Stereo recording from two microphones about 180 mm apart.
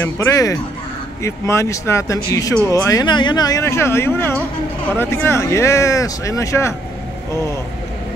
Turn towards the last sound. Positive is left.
turn(degrees=15)  # may be behind; listen again after turning